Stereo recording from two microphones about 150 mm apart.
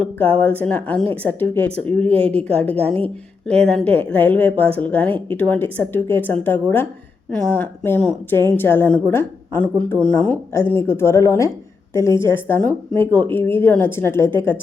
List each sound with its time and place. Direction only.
0.0 s a woman's voice: 10° left (ahead or behind)
2.7 s a woman's voice: 40° right (ahead or behind)
3.4 s a woman's voice: 5° left (ahead or behind)